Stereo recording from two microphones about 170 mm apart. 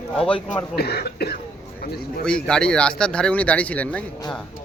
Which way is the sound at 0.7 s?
70° left (ahead or behind).